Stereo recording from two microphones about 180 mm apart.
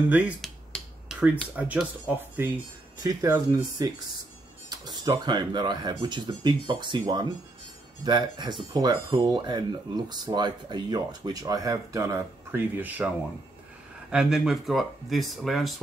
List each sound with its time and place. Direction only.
0.1 s speech: 5° right (ahead or behind)
0.7 s finger snapping: 5° right (ahead or behind)
1.6 s speech: 5° right (ahead or behind)
3.0 s speech: 20° right (ahead or behind)
14.1 s speech: 5° right (ahead or behind)